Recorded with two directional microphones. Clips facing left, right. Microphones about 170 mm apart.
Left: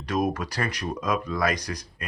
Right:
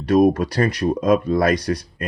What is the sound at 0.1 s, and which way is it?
Speech, 35° right (ahead or behind).